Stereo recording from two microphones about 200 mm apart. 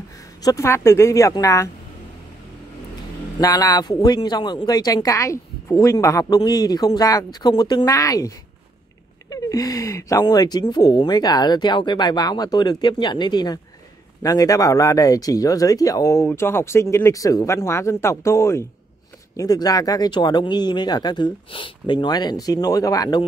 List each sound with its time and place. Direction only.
0.2 s speech: 15° left (ahead or behind)
3.3 s speech: 20° left (ahead or behind)